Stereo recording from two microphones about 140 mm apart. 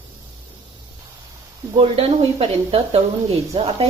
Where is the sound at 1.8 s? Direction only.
40° right (ahead or behind).